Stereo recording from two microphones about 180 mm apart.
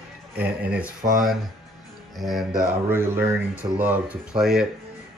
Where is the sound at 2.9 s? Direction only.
15° right (ahead or behind).